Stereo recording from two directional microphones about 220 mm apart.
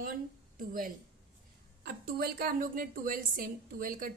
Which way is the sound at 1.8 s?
45° right (ahead or behind).